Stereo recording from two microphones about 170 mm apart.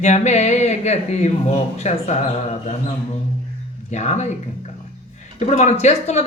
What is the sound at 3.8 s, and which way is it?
Speech, 40° left (ahead or behind).